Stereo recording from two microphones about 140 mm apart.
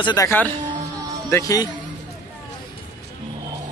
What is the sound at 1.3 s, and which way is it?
Speech, 25° left (ahead or behind).